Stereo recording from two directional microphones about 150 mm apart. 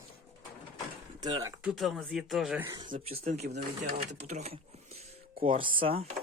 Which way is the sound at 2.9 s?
45° right (ahead or behind).